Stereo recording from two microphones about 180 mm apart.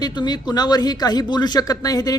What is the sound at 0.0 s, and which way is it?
Speech, 25° left (ahead or behind).